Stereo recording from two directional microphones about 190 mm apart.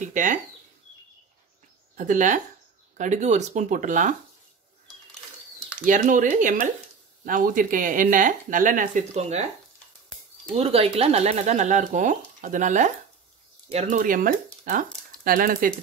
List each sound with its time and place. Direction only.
0.0 s speech: 40° right (ahead or behind)
2.0 s speech: 40° right (ahead or behind)
5.9 s speech: 45° right (ahead or behind)
10.5 s speech: 30° right (ahead or behind); by 15.7 s 50° right (ahead or behind)